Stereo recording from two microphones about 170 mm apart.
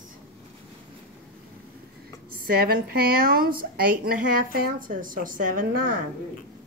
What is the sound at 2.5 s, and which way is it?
A woman's voice, 65° right (ahead or behind).